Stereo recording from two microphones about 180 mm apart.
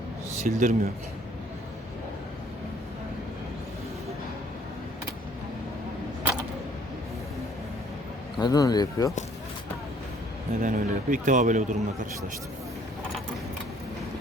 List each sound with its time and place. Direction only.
0.4 s a man's voice: 45° right (ahead or behind)
8.4 s speech: 20° left (ahead or behind)
10.6 s a man's voice: 45° right (ahead or behind)